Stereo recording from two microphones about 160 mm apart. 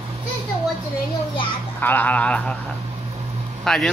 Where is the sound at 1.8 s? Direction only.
10° left (ahead or behind).